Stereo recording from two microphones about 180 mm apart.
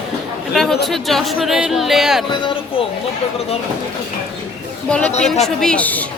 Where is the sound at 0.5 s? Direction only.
Centre (ahead or behind).